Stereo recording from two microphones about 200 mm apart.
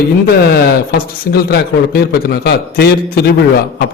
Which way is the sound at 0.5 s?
50° left (ahead or behind).